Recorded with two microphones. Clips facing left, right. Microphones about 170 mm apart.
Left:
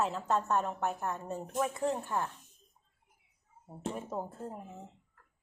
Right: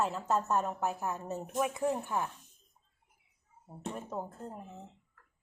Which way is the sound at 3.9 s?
10° left (ahead or behind).